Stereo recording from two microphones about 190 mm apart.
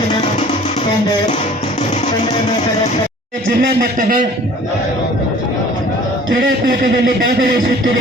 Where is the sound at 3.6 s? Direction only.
45° right (ahead or behind).